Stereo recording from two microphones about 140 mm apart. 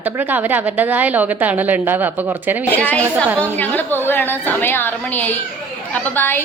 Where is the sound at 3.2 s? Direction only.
15° right (ahead or behind).